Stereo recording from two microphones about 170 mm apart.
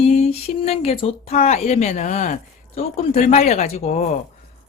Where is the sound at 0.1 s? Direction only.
40° left (ahead or behind).